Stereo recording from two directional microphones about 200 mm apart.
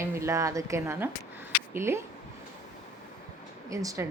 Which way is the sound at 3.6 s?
15° right (ahead or behind).